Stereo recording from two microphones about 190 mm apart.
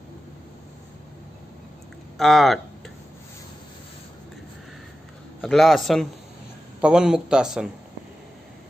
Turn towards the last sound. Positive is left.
turn(degrees=-5)  # may be behind; listen again after turning